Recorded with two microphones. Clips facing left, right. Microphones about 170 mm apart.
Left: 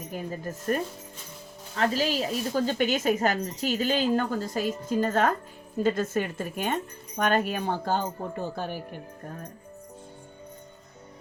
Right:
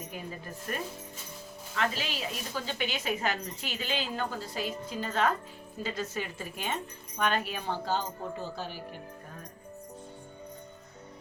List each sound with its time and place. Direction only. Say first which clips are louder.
0.1 s speech: left 7 dB; 40° left (ahead or behind)